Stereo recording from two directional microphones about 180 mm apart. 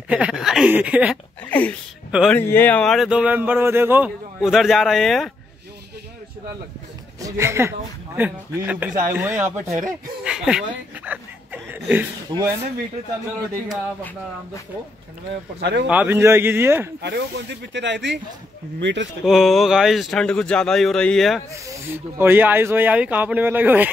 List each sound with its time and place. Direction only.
0.1 s speech: 5° right (ahead or behind)
1.4 s speech: 10° left (ahead or behind)
2.0 s speech: 5° right (ahead or behind)
2.3 s speech: 10° left (ahead or behind)
7.2 s speech: 15° right (ahead or behind)
11.1 s a sound: 10° right (ahead or behind)
12.3 s speech: 30° right (ahead or behind)
15.6 s speech: 75° right (ahead or behind)
15.9 s speech: 10° right (ahead or behind)
17.0 s speech: 70° right (ahead or behind)
19.2 s speech: centre (ahead or behind)
21.6 s speech: 15° right (ahead or behind)